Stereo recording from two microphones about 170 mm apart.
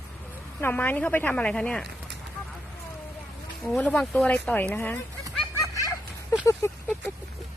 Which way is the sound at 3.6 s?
5° left (ahead or behind).